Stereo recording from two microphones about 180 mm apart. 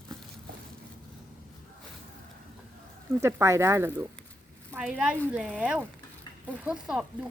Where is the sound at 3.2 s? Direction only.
15° right (ahead or behind).